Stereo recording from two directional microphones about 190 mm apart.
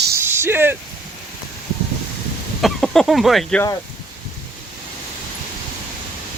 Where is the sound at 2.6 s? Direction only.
Centre (ahead or behind).